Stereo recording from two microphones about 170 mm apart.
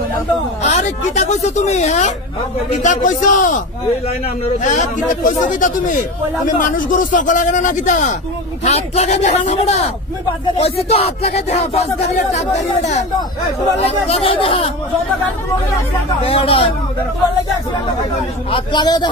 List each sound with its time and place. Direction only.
0.6 s speech: 40° left (ahead or behind)
4.6 s speech: 45° left (ahead or behind)
16.3 s speech: 35° left (ahead or behind)
18.5 s a man's voice: 25° left (ahead or behind)